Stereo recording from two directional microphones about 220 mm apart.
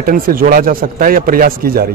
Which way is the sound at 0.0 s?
40° right (ahead or behind).